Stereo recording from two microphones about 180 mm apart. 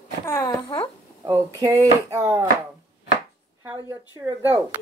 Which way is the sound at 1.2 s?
20° right (ahead or behind).